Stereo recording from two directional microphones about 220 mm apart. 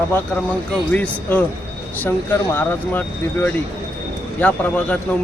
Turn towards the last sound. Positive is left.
turn(degrees=5)  # may be behind; listen again after turning